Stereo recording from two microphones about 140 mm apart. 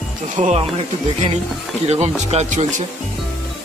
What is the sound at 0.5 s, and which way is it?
Speech, 45° right (ahead or behind).